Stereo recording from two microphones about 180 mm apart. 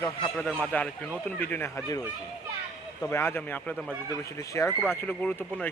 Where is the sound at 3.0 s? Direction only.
15° left (ahead or behind).